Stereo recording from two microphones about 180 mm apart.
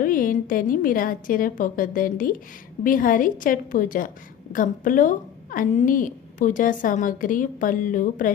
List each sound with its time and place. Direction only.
0.0 s a woman's voice: 50° left (ahead or behind)